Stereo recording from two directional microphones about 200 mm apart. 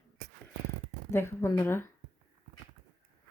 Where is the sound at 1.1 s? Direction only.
10° left (ahead or behind).